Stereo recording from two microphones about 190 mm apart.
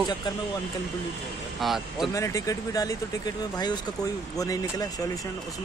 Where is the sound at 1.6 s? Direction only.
Centre (ahead or behind).